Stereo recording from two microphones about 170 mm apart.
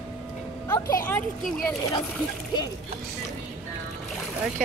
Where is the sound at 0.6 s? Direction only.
20° left (ahead or behind).